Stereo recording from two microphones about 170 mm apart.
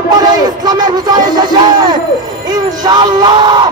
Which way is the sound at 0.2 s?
25° right (ahead or behind).